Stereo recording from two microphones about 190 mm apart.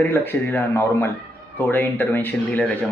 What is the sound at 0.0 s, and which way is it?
Speech, 10° left (ahead or behind).